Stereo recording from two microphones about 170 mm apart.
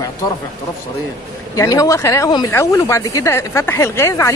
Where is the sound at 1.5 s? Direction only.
20° left (ahead or behind).